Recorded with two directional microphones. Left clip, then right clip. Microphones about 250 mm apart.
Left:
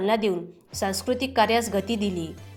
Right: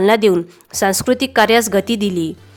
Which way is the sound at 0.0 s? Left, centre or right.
Right.